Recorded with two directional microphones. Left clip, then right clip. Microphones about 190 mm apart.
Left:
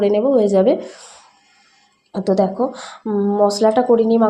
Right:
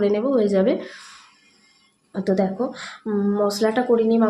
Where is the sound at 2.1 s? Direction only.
10° left (ahead or behind).